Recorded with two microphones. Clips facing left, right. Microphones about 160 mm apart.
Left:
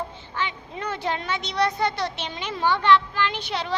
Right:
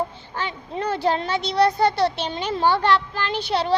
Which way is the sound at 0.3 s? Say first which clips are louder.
Right 3 dB; 35° right (ahead or behind).